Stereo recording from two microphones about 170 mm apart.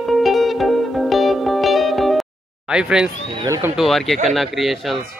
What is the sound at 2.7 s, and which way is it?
Speech, 5° right (ahead or behind).